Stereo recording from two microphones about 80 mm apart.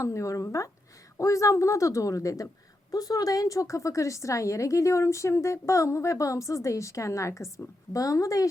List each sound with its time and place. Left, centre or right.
0.0 s a woman's voice: left